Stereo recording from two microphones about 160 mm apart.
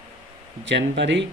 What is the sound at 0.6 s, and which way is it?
Speech, 90° right.